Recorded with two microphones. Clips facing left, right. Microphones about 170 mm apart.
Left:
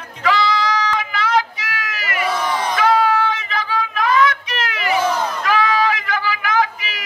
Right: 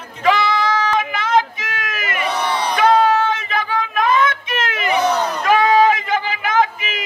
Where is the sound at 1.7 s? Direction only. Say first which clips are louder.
Right 1 dB; 25° right (ahead or behind).